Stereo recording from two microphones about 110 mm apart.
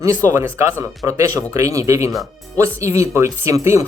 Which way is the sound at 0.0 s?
25° right (ahead or behind).